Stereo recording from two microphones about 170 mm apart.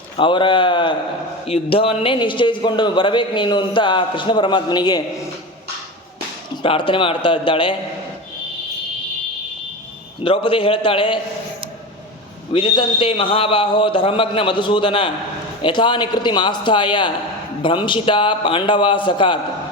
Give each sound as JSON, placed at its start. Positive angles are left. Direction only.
{"t": 0.2, "sound": "a man's voice", "side_deg": 30}
{"t": 6.6, "sound": "a man's voice", "side_deg": 30}
{"t": 10.2, "sound": "a man's voice", "side_deg": 30}
{"t": 12.5, "sound": "a man's voice", "side_deg": 30}